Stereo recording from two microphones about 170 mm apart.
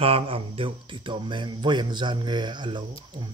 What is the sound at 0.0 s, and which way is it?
Speech, 35° right (ahead or behind).